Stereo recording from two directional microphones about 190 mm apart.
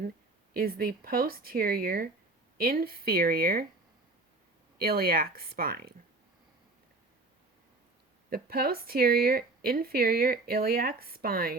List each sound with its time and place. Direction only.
0.5 s speech: 50° right (ahead or behind)
4.8 s speech: 50° right (ahead or behind)
8.3 s speech: 55° right (ahead or behind)